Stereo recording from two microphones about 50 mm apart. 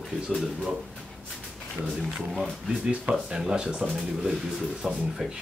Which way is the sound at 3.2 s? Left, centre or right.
Centre.